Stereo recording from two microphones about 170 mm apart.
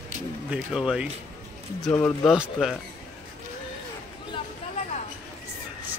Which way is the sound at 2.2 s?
Centre (ahead or behind).